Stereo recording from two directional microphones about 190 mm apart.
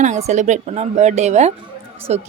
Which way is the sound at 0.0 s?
40° right (ahead or behind).